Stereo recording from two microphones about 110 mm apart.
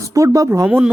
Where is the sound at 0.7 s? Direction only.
15° right (ahead or behind).